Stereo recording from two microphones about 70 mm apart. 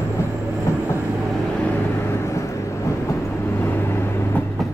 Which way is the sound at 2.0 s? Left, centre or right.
Left.